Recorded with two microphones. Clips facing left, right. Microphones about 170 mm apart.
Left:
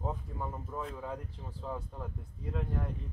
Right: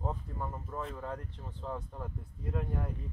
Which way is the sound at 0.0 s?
5° left (ahead or behind).